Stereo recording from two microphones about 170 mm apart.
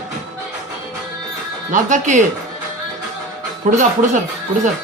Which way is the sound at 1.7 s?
45° right (ahead or behind).